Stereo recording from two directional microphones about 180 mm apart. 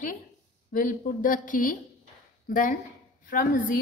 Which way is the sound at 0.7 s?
50° left (ahead or behind).